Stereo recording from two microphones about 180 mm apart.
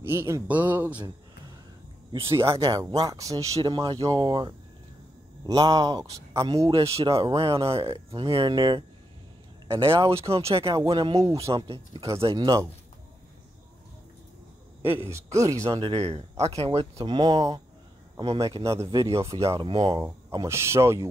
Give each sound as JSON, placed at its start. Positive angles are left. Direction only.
{"t": 0.0, "sound": "speech", "side_deg": -15}
{"t": 2.3, "sound": "speech", "side_deg": -15}
{"t": 6.7, "sound": "speech", "side_deg": -30}
{"t": 11.5, "sound": "speech", "side_deg": -30}
{"t": 14.8, "sound": "speech", "side_deg": -10}
{"t": 15.7, "sound": "speech", "side_deg": -30}
{"t": 16.9, "sound": "speech", "side_deg": -25}
{"t": 19.2, "sound": "speech", "side_deg": -30}
{"t": 20.0, "sound": "speech", "side_deg": -15}